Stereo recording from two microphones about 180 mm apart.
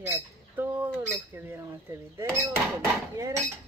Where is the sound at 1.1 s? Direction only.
15° right (ahead or behind).